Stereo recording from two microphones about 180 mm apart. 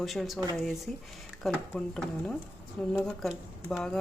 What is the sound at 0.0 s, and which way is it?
Speech, centre (ahead or behind).